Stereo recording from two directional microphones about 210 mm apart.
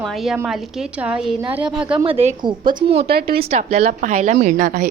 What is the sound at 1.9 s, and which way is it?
A woman's voice, 25° right (ahead or behind).